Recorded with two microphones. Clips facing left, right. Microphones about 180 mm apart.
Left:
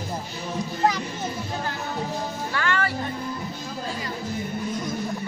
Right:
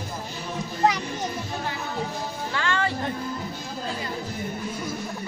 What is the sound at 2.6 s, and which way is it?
Music, 20° right (ahead or behind).